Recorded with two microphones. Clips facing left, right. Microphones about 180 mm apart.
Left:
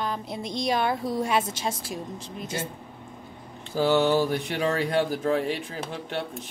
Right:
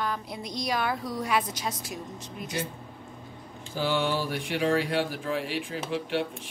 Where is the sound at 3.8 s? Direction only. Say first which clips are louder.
Left 6 dB; 40° left (ahead or behind).